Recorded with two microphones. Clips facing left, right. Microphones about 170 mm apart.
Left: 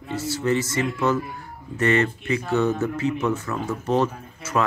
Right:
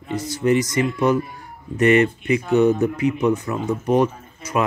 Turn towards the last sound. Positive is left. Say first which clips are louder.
# right 1 dB
turn(degrees=-15)  # may be behind; listen again after turning